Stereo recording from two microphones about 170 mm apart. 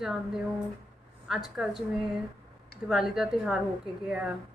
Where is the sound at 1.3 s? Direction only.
Centre (ahead or behind).